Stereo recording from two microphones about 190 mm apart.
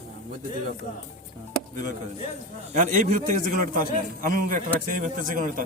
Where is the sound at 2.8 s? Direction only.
40° right (ahead or behind).